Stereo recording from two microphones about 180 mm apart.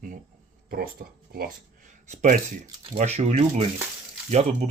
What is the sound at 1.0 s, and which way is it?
Speech, 55° right (ahead or behind).